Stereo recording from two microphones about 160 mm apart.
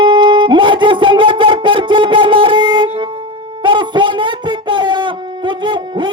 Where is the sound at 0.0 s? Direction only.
30° right (ahead or behind).